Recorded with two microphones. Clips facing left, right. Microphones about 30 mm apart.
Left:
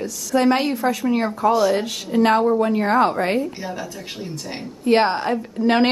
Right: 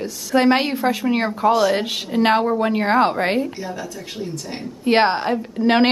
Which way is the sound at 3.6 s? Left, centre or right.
Centre.